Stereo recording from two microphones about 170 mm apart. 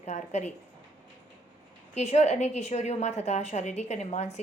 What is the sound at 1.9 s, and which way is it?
A woman's voice, 40° left (ahead or behind).